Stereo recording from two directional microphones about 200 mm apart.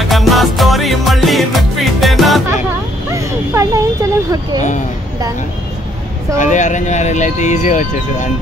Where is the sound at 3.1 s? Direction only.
15° right (ahead or behind).